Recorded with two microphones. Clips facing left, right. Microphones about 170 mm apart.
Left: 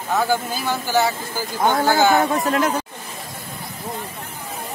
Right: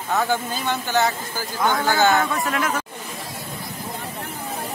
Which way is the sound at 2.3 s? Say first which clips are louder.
Left 4 dB; 25° left (ahead or behind).